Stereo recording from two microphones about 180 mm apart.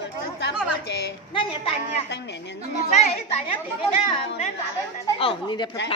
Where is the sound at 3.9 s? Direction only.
30° left (ahead or behind).